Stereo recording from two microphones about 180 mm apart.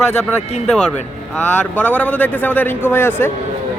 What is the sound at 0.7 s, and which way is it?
A man's voice, 5° left (ahead or behind).